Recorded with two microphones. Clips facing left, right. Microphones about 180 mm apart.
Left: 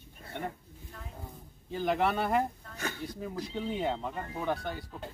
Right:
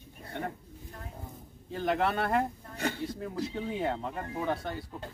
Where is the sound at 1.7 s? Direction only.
Centre (ahead or behind).